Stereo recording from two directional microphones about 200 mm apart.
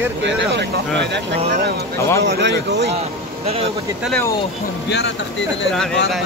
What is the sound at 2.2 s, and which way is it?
Speech, 60° right (ahead or behind).